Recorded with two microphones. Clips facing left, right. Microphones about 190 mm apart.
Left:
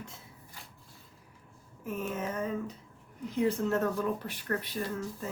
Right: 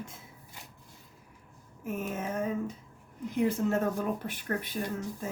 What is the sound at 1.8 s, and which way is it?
Speech, 50° right (ahead or behind).